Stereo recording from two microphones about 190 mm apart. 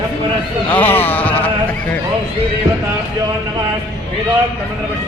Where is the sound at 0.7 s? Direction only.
10° left (ahead or behind).